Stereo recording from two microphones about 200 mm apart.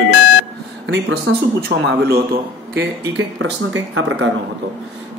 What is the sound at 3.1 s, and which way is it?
Speech, 70° right (ahead or behind).